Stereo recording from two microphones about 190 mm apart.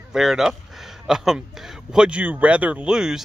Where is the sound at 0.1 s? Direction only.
Centre (ahead or behind).